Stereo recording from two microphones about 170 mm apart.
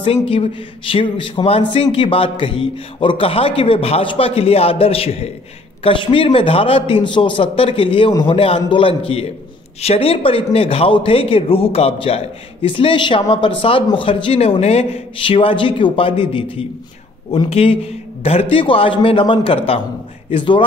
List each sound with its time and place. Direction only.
0.0 s speech: 35° left (ahead or behind)